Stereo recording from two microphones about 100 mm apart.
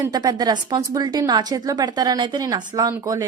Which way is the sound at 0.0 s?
40° right (ahead or behind).